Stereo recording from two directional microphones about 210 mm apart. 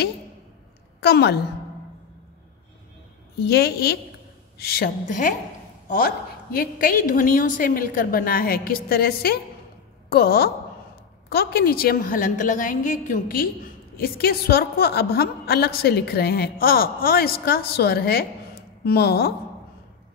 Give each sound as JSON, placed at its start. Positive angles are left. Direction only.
{"t": 1.0, "sound": "a woman's voice", "side_deg": 50}
{"t": 3.3, "sound": "a woman's voice", "side_deg": 50}